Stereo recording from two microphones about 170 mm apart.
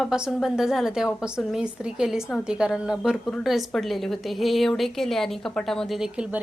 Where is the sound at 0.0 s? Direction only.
Centre (ahead or behind).